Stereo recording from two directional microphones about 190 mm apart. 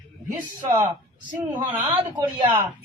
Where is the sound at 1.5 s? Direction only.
20° right (ahead or behind).